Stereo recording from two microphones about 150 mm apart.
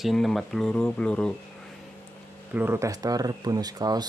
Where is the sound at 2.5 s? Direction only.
15° right (ahead or behind).